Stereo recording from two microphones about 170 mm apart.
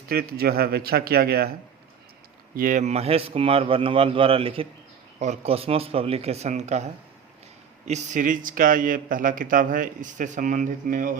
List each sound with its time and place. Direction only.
0.1 s speech: 65° right (ahead or behind)
2.6 s a man's voice: 50° right (ahead or behind)